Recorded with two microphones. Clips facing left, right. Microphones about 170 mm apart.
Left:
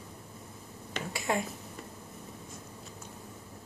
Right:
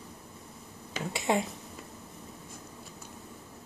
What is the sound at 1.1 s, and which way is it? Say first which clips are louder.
Speech: right 3 dB; 20° right (ahead or behind).